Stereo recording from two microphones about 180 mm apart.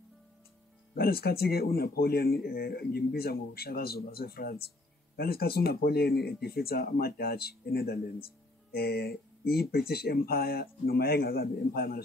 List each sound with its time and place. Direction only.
0.9 s speech: 60° left (ahead or behind)